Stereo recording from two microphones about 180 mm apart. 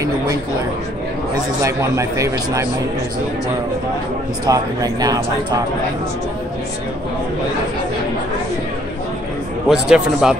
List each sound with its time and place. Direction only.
1.6 s a man's voice: 15° right (ahead or behind)
4.5 s a man's voice: 20° right (ahead or behind)
9.7 s speech: 5° right (ahead or behind)